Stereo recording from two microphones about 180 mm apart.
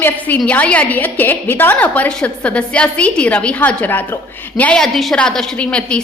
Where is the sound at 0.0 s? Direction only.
10° left (ahead or behind).